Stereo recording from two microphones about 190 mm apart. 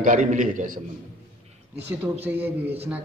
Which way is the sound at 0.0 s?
40° right (ahead or behind).